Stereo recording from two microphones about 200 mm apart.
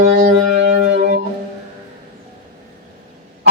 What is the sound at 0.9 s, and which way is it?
Music, 60° right (ahead or behind).